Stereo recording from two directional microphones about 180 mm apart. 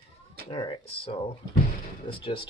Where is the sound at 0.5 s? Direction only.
30° left (ahead or behind).